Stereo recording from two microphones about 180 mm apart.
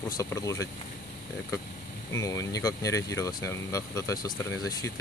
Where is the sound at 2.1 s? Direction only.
20° left (ahead or behind).